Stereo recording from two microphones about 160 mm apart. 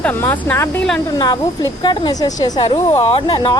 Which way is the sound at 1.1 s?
25° left (ahead or behind).